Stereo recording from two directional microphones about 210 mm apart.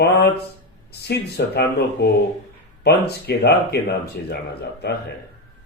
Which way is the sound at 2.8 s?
50° left (ahead or behind).